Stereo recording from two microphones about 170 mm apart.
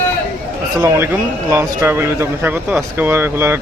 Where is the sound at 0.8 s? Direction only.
15° right (ahead or behind).